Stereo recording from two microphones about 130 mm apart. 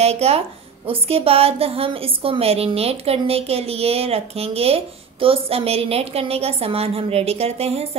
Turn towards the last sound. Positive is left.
turn(degrees=-50)  # may be behind; listen again after turning